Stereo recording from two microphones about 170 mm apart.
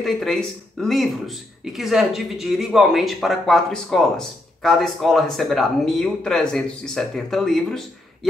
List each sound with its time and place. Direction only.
0.0 s speech: centre (ahead or behind)